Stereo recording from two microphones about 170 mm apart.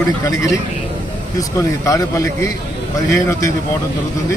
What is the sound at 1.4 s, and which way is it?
A man's voice, 20° left (ahead or behind).